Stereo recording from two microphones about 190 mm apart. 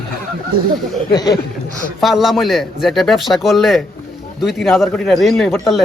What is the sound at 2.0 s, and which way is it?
A man's voice, centre (ahead or behind).